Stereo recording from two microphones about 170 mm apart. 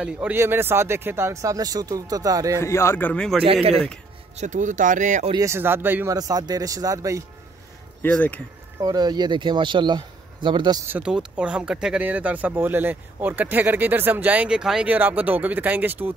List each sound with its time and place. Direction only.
0.0 s speech: 10° right (ahead or behind)
2.6 s speech: 15° left (ahead or behind)
4.4 s speech: 45° right (ahead or behind)
5.3 s speech: 15° right (ahead or behind)
8.0 s speech: 10° left (ahead or behind)
8.8 s speech: 25° right (ahead or behind)
10.9 s speech: 5° right (ahead or behind)